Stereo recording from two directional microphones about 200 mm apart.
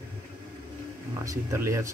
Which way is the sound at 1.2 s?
15° right (ahead or behind).